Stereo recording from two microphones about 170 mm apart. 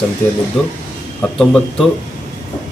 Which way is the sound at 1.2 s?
5° left (ahead or behind).